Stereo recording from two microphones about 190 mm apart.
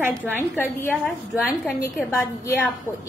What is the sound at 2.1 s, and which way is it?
Speech, 15° left (ahead or behind).